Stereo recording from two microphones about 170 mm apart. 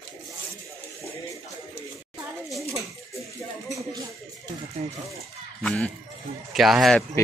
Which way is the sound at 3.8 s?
20° right (ahead or behind).